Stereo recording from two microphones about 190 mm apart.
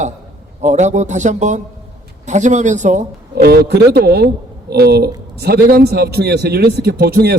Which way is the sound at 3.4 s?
60° right (ahead or behind).